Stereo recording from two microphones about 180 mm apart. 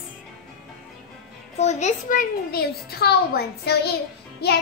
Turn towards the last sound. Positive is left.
turn(degrees=60)  # may be behind; listen again after turning